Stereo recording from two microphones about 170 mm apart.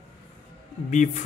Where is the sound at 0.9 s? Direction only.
45° left (ahead or behind).